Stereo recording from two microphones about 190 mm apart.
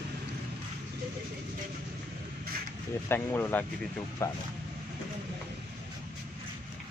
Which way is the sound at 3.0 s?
10° left (ahead or behind).